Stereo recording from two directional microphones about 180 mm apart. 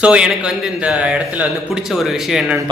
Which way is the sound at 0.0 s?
5° right (ahead or behind).